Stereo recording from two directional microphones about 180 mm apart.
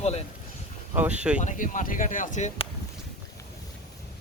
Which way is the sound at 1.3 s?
45° left (ahead or behind).